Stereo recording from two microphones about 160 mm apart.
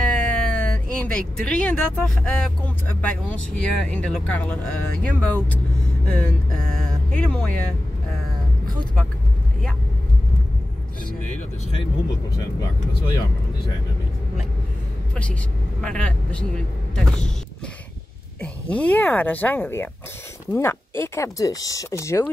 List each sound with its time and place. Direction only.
0.0 s speech: 10° left (ahead or behind)
15.8 s speech: 5° left (ahead or behind)
18.4 s speech: 10° left (ahead or behind)